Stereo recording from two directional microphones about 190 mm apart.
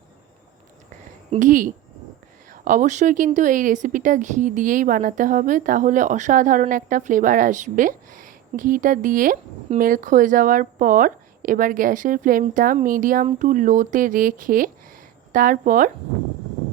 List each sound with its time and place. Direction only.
1.4 s a woman's voice: 45° right (ahead or behind)